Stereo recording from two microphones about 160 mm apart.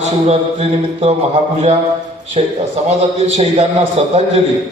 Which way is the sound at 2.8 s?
45° right (ahead or behind).